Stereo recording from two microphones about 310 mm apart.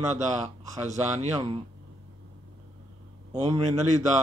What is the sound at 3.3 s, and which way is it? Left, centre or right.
Speech, centre.